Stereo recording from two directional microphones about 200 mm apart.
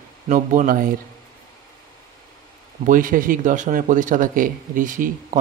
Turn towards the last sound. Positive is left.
turn(degrees=-40)  # may be behind; listen again after turning